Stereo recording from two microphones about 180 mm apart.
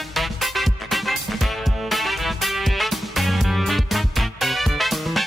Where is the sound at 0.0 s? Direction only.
Centre (ahead or behind).